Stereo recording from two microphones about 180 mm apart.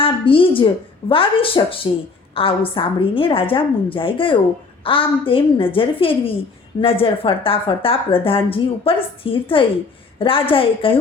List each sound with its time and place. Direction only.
0.0 s a woman's voice: 30° left (ahead or behind)